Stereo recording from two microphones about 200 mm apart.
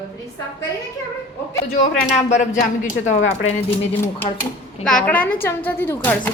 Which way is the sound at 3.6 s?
10° left (ahead or behind).